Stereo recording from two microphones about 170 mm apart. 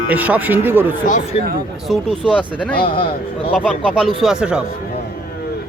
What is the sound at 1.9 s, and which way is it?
Speech, centre (ahead or behind).